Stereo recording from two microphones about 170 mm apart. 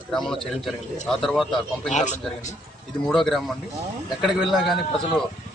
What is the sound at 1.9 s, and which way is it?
Speech, 45° left (ahead or behind).